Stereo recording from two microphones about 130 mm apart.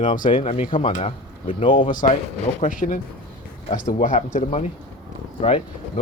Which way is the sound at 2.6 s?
90° left.